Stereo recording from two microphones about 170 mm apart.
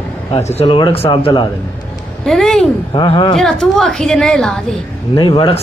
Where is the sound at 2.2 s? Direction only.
Centre (ahead or behind).